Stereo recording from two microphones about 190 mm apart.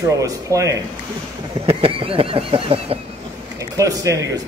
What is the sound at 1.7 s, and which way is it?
Speech, 30° right (ahead or behind).